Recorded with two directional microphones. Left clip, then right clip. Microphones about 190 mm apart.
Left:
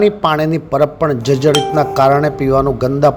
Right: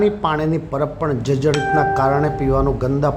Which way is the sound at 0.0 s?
20° left (ahead or behind).